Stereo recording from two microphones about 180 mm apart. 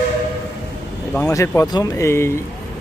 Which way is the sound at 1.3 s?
20° left (ahead or behind).